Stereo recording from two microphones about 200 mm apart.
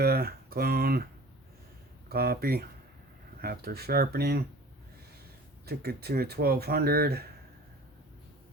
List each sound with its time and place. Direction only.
0.0 s speech: 50° right (ahead or behind)
2.0 s speech: 50° right (ahead or behind)
5.6 s speech: 50° right (ahead or behind)